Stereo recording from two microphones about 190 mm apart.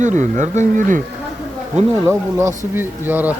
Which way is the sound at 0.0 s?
40° right (ahead or behind).